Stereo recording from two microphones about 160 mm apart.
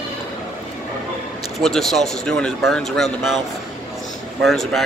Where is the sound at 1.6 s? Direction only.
Centre (ahead or behind).